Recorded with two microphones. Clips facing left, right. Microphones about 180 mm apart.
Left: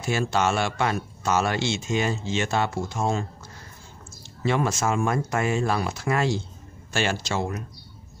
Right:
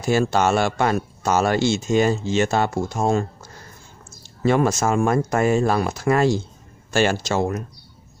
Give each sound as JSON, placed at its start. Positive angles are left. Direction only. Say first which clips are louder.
{"t": 0.0, "sound": "speech", "louder": "right 5 dB", "side_deg": -40}
{"t": 4.4, "sound": "speech", "louder": "right 6 dB", "side_deg": -45}